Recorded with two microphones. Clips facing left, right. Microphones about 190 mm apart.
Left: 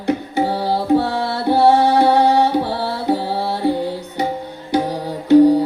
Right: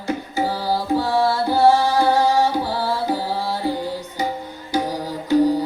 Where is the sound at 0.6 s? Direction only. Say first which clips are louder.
Left 6 dB; 65° left (ahead or behind).